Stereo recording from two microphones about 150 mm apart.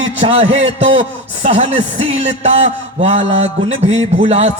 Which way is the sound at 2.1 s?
45° right (ahead or behind).